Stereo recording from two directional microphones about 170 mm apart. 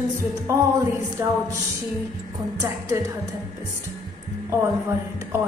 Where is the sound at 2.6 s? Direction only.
15° right (ahead or behind).